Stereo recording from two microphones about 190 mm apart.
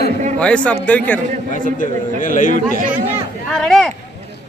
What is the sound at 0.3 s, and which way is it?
Speech, 5° left (ahead or behind).